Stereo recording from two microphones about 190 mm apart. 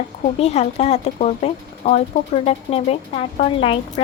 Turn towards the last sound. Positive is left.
turn(degrees=30)  # may be behind; listen again after turning